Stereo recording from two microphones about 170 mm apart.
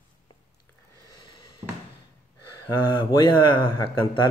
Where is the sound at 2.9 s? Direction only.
25° left (ahead or behind).